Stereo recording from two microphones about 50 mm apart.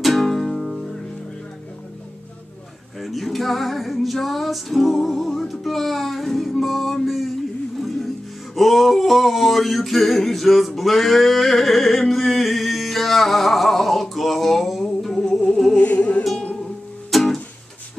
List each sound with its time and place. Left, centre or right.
0.0 s music: centre
3.0 s male singing: centre
8.5 s male singing: centre
15.8 s music: left
17.1 s music: centre